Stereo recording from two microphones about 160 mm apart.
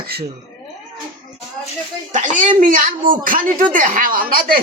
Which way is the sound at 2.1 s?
50° right (ahead or behind).